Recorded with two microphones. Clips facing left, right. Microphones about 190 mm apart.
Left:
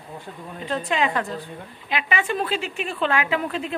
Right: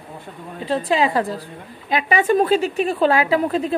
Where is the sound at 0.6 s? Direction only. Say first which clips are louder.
Right 5 dB; 35° right (ahead or behind).